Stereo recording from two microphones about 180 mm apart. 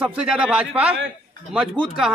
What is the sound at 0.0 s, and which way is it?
Speech, 5° right (ahead or behind).